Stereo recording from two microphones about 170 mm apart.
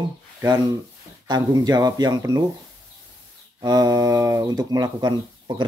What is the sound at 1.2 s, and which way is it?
Speech, 25° right (ahead or behind).